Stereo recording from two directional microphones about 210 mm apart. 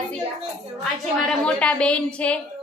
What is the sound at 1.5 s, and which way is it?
Speech, 5° left (ahead or behind).